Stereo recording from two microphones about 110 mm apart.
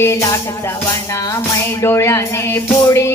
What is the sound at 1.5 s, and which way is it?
Speech, 25° left (ahead or behind).